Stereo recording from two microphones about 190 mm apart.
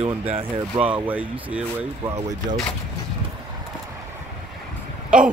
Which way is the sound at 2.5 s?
25° right (ahead or behind).